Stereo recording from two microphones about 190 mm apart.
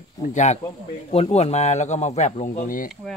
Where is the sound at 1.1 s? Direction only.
35° left (ahead or behind).